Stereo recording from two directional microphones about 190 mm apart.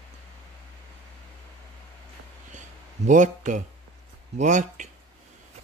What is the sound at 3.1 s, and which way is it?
A man's voice, 40° right (ahead or behind).